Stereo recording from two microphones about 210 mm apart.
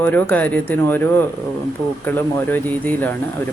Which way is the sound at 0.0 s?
10° left (ahead or behind).